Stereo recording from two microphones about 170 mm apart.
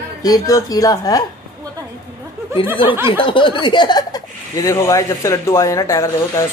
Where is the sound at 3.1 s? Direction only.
30° left (ahead or behind).